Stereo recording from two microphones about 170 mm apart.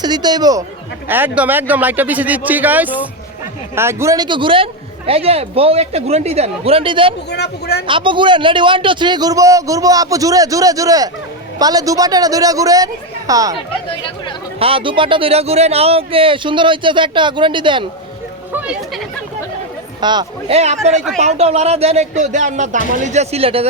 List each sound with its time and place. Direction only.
0.0 s speech: 25° right (ahead or behind)
1.0 s a man's voice: 10° right (ahead or behind); by 7.1 s 30° right (ahead or behind)
7.3 s speech: 75° left (ahead or behind)
7.9 s speech: 30° right (ahead or behind)
14.6 s speech: 30° right (ahead or behind)
18.5 s a sound: 5° right (ahead or behind)
20.0 s speech: 25° right (ahead or behind)
20.9 s speech: centre (ahead or behind)
21.2 s a man's voice: 40° right (ahead or behind)